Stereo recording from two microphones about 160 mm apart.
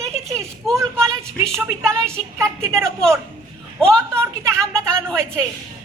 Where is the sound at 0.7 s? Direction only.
20° right (ahead or behind).